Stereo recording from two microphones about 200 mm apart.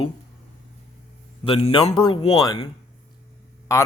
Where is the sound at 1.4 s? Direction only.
25° left (ahead or behind).